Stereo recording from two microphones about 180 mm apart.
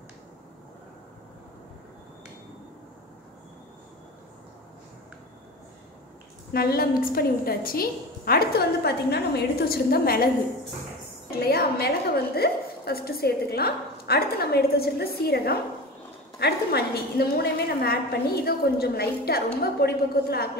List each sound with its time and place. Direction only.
6.5 s a woman's voice: 60° left (ahead or behind)
11.3 s a woman's voice: 60° left (ahead or behind)